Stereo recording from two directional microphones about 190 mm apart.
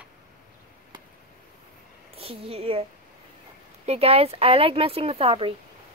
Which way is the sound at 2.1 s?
30° right (ahead or behind).